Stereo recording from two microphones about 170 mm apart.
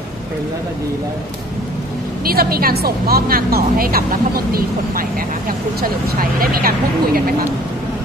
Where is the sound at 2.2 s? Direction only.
60° right (ahead or behind).